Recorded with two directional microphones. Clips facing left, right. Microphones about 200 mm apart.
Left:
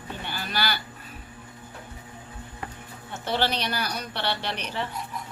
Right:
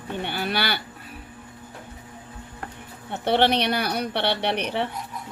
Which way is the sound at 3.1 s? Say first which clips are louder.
Right 6 dB; 60° right (ahead or behind).